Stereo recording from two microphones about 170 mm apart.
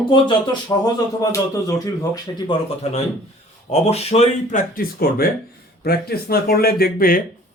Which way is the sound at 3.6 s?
40° left (ahead or behind).